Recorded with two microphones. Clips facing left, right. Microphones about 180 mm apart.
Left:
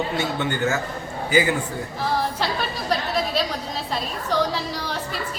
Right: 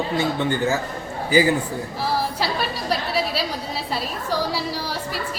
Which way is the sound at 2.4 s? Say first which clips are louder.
Right 1 dB; 10° right (ahead or behind).